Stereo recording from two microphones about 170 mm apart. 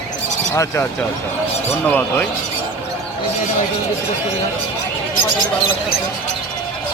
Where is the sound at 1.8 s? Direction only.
10° left (ahead or behind).